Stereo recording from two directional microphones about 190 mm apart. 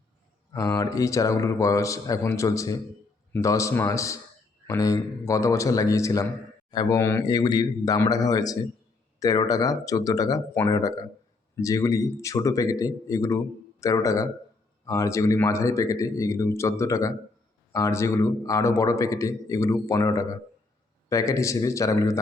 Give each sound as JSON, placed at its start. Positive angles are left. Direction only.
{"t": 0.5, "sound": "a man's voice", "side_deg": 15}